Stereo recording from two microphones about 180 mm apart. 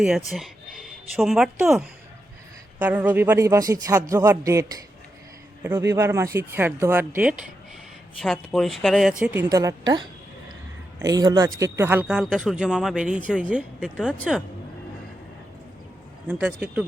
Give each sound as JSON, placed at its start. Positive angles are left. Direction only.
{"t": 0.3, "sound": "speech", "side_deg": 0}
{"t": 2.7, "sound": "a man's voice", "side_deg": -10}
{"t": 5.6, "sound": "a man's voice", "side_deg": -15}
{"t": 8.2, "sound": "speech", "side_deg": 0}
{"t": 9.2, "sound": "a woman's voice", "side_deg": -10}
{"t": 16.4, "sound": "a man's voice", "side_deg": -10}